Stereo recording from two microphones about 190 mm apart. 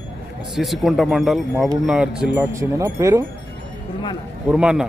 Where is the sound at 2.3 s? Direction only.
15° right (ahead or behind).